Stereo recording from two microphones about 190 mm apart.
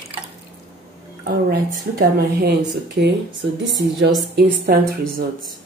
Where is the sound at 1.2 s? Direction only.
50° right (ahead or behind).